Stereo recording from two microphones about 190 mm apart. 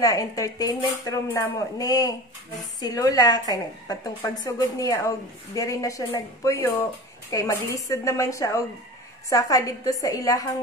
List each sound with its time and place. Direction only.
0.0 s a woman's voice: 20° left (ahead or behind)